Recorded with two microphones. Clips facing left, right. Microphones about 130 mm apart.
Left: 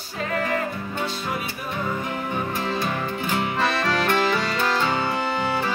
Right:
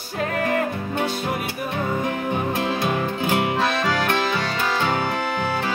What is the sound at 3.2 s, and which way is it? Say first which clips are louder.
Music: right 4 dB; 60° right (ahead or behind).